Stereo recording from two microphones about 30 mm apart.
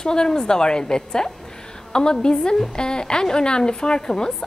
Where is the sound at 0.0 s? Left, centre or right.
Left.